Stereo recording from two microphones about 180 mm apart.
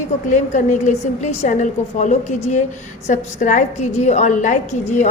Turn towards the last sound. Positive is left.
turn(degrees=40)  # may be behind; listen again after turning